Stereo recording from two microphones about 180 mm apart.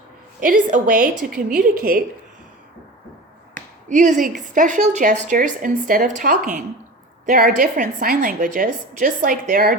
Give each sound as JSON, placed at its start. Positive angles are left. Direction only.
{"t": 0.4, "sound": "speech", "side_deg": -45}
{"t": 3.5, "sound": "speech", "side_deg": -45}